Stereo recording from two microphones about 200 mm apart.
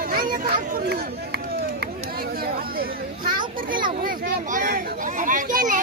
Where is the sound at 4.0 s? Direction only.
45° right (ahead or behind).